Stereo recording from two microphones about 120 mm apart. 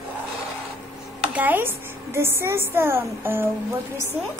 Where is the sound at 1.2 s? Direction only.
15° right (ahead or behind).